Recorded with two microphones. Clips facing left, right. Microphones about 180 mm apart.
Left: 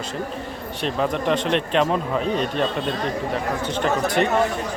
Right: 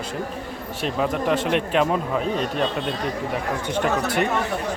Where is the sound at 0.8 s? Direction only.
5° right (ahead or behind).